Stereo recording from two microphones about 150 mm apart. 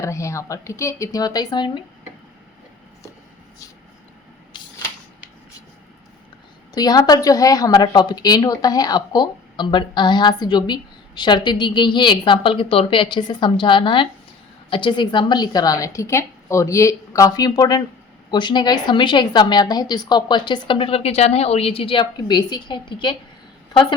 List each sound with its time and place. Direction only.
0.0 s a woman's voice: 20° left (ahead or behind)
6.7 s a woman's voice: 25° left (ahead or behind)